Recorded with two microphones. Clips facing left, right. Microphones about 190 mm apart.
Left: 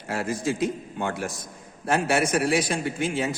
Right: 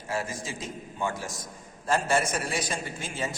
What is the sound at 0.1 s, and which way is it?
A man's voice, 65° left (ahead or behind).